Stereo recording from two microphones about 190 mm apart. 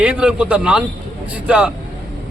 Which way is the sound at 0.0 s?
5° right (ahead or behind).